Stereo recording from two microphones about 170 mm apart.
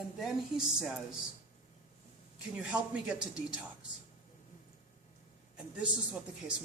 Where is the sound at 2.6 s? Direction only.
5° right (ahead or behind).